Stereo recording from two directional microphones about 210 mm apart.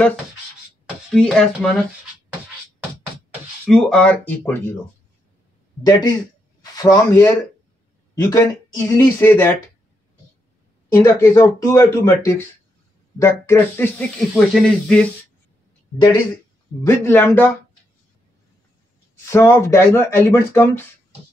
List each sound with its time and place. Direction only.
1.1 s speech: 5° left (ahead or behind)
3.6 s speech: 5° left (ahead or behind)
5.9 s speech: 20° left (ahead or behind)
10.9 s speech: 10° left (ahead or behind)
16.8 s speech: 10° left (ahead or behind)
19.3 s speech: 15° left (ahead or behind)